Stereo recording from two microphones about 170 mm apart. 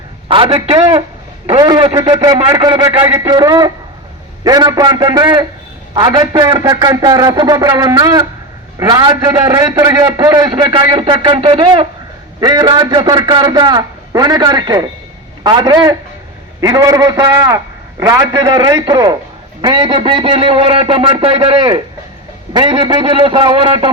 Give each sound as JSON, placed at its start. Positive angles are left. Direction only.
{"t": 0.3, "sound": "a man's voice", "side_deg": -30}
{"t": 10.5, "sound": "a man's voice", "side_deg": -30}
{"t": 18.3, "sound": "a man's voice", "side_deg": -25}